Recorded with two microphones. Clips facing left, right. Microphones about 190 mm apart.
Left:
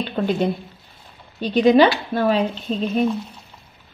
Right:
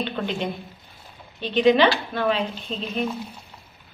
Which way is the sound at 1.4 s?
40° left (ahead or behind).